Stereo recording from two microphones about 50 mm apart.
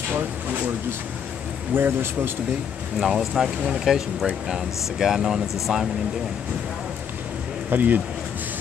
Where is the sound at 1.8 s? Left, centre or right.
Right.